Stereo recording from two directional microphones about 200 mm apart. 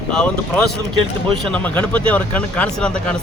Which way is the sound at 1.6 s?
5° left (ahead or behind).